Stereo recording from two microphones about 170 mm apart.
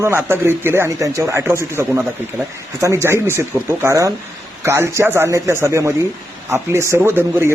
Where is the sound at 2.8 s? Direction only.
15° right (ahead or behind).